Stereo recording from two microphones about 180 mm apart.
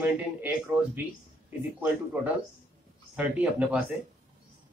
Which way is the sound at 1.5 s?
10° right (ahead or behind).